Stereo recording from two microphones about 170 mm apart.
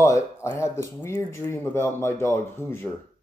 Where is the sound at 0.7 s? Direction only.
15° left (ahead or behind).